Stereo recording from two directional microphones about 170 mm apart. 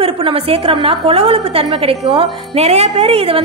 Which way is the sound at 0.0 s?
35° right (ahead or behind).